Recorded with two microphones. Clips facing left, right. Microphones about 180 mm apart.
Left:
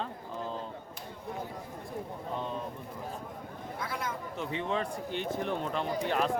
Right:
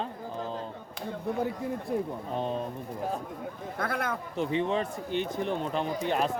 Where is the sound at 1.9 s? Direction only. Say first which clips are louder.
Right 9 dB; 85° right.